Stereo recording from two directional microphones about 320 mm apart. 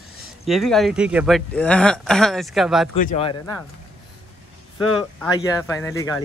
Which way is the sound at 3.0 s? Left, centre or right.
Centre.